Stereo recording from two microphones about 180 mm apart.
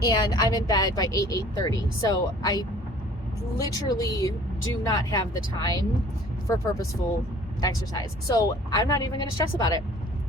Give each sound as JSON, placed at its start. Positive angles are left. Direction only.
{"t": 0.0, "sound": "speech", "side_deg": 20}
{"t": 7.6, "sound": "speech", "side_deg": 20}